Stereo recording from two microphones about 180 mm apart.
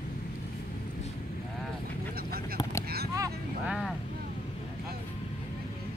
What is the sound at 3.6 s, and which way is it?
Vehicle, centre (ahead or behind).